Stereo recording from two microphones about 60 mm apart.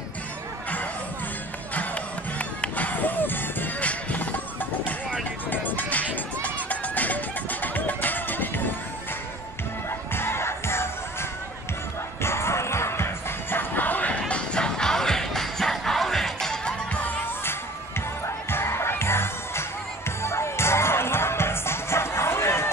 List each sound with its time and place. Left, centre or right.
2.3 s music: left
9.8 s music: left
12.2 s music: left
14.2 s music: centre
18.2 s music: left